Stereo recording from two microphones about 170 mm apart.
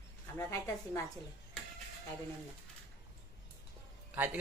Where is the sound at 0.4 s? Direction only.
15° left (ahead or behind).